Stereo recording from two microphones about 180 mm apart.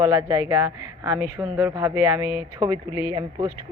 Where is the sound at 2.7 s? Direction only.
30° left (ahead or behind).